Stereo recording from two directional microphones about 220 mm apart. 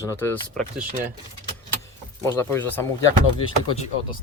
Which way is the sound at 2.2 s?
10° left (ahead or behind).